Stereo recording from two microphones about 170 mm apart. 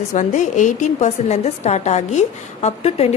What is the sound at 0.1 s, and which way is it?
A woman's voice, 45° left (ahead or behind).